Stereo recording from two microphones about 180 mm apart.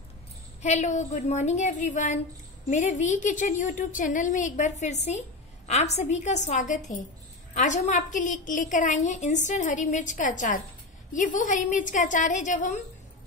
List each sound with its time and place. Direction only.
0.6 s a woman's voice: 40° left (ahead or behind)